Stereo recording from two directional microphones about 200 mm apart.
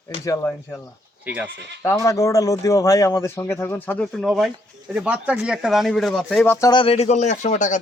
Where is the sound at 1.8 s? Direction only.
15° left (ahead or behind).